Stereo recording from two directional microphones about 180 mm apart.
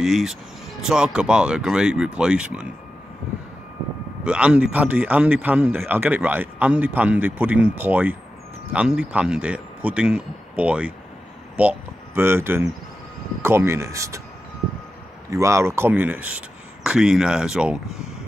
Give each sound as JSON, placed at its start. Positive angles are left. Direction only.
{"t": 0.0, "sound": "speech", "side_deg": 0}
{"t": 4.2, "sound": "a man's voice", "side_deg": -5}
{"t": 15.2, "sound": "a man's voice", "side_deg": -15}